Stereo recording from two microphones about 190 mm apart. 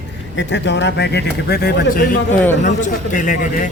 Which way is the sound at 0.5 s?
65° left (ahead or behind).